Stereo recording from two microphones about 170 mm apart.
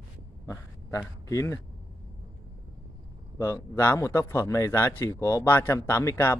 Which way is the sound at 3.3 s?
15° left (ahead or behind).